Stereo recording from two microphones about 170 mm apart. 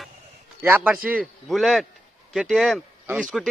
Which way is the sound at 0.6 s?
10° right (ahead or behind).